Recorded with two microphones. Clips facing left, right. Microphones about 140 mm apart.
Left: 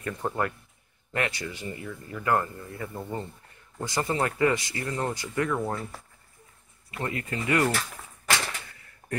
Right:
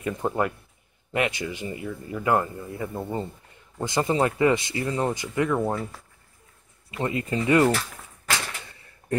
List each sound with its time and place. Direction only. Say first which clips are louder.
0.0 s speech: right 4 dB; 15° right (ahead or behind)
6.9 s speech: right 5 dB; 25° right (ahead or behind)